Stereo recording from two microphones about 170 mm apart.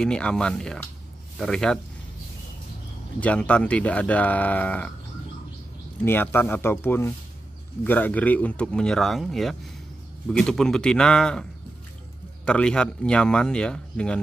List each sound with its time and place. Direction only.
0.0 s speech: 5° left (ahead or behind)
3.2 s speech: 5° left (ahead or behind)
6.0 s speech: 10° left (ahead or behind)
12.4 s speech: 5° left (ahead or behind)